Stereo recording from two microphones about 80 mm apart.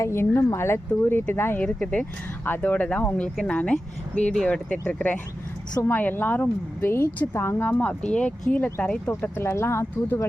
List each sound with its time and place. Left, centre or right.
0.0 s speech: left
1.6 s speech: centre
9.3 s speech: left